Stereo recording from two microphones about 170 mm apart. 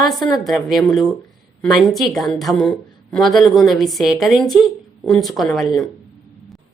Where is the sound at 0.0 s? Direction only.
Centre (ahead or behind).